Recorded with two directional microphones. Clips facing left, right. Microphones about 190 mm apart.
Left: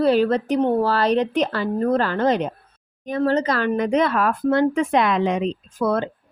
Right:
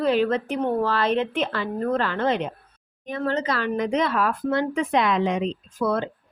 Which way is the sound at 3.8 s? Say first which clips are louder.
Left 2 dB; 55° left (ahead or behind).